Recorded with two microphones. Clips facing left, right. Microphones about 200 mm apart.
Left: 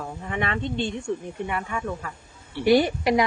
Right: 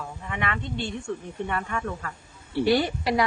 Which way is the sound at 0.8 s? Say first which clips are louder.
Left 4 dB; 15° left (ahead or behind).